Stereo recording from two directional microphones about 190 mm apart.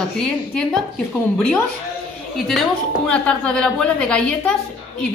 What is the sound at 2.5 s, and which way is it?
Speech, 5° left (ahead or behind).